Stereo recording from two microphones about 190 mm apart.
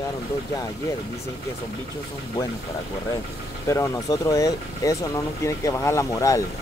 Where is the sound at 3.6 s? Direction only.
15° left (ahead or behind).